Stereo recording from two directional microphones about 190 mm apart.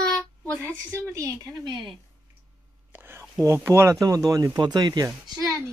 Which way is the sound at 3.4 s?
15° right (ahead or behind).